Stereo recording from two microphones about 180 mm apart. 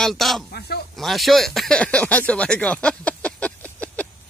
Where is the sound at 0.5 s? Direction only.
65° left (ahead or behind).